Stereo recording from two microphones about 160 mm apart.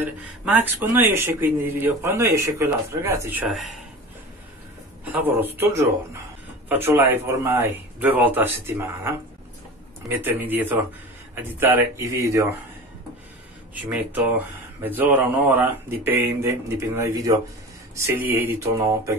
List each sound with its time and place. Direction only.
0.0 s a man's voice: 10° right (ahead or behind)
5.0 s a man's voice: 10° right (ahead or behind)
13.8 s a man's voice: 10° right (ahead or behind)